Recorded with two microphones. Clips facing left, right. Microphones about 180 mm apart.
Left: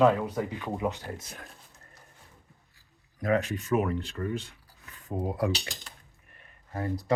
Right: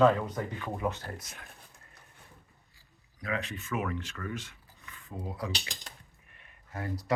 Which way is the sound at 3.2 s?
45° left (ahead or behind).